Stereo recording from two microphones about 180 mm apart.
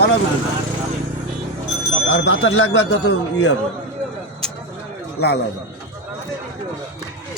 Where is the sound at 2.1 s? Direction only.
90° left.